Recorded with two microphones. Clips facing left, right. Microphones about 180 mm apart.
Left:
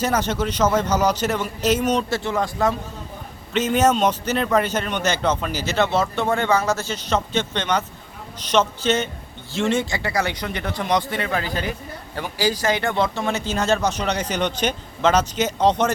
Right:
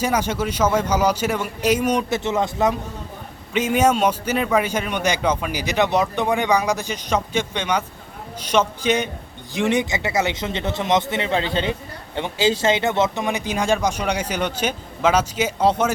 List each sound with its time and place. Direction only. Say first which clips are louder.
0.0 s a man's voice: even; 10° right (ahead or behind)
3.5 s a man's voice: even; 10° right (ahead or behind)